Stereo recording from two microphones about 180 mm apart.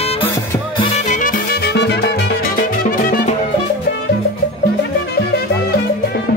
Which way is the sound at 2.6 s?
50° left (ahead or behind).